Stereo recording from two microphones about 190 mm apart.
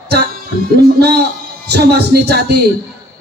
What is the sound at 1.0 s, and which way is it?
Speech, 60° right (ahead or behind).